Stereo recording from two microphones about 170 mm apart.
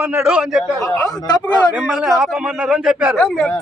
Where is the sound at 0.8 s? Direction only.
20° left (ahead or behind).